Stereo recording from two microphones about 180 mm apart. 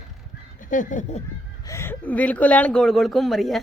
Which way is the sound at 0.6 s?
45° left (ahead or behind).